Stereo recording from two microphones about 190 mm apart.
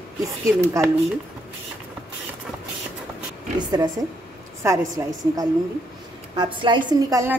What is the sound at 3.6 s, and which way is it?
A woman's voice, 20° right (ahead or behind).